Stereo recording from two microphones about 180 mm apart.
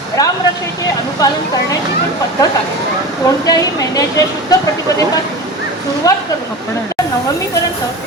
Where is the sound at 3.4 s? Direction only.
20° left (ahead or behind).